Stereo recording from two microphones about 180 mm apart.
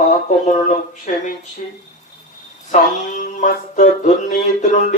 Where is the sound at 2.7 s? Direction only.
40° left (ahead or behind).